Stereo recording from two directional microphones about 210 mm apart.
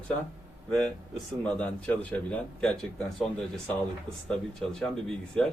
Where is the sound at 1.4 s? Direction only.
5° left (ahead or behind).